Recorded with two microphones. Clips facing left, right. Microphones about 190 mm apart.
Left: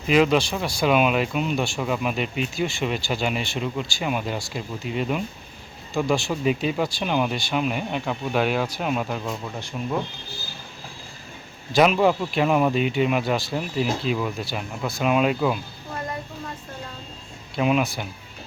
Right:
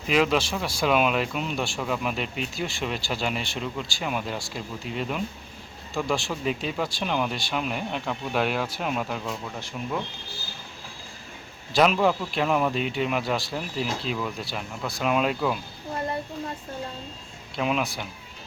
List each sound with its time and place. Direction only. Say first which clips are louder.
0.1 s speech: left 4 dB; centre (ahead or behind)
11.7 s speech: left 3 dB; 5° left (ahead or behind)
17.6 s speech: left 5 dB; 5° left (ahead or behind)